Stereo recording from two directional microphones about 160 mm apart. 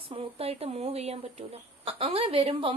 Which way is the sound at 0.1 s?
35° right (ahead or behind).